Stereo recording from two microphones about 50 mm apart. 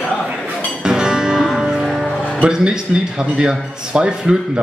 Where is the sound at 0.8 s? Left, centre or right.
Centre.